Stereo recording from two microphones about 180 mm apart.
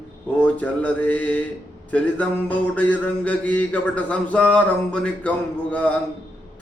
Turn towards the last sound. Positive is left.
turn(degrees=5)  # may be behind; listen again after turning